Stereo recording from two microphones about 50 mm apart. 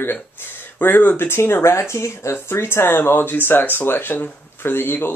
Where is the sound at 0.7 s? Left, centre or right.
Left.